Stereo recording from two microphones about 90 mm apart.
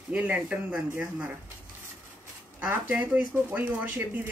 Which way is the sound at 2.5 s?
20° right (ahead or behind).